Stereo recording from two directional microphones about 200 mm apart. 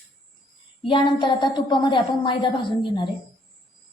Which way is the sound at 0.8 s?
25° left (ahead or behind).